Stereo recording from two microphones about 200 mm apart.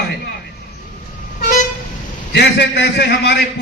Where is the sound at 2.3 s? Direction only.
60° left (ahead or behind).